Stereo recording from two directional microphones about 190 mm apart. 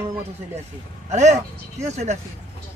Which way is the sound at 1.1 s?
35° right (ahead or behind).